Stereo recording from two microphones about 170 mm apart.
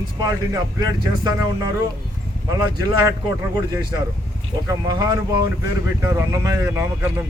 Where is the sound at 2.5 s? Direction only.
20° right (ahead or behind).